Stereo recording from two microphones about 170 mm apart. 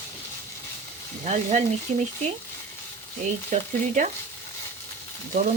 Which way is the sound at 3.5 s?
50° right (ahead or behind).